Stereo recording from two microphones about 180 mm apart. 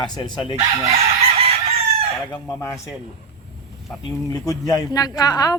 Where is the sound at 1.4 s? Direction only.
35° right (ahead or behind).